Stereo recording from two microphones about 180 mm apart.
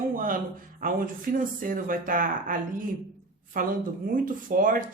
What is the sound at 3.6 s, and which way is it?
Speech, 50° right (ahead or behind).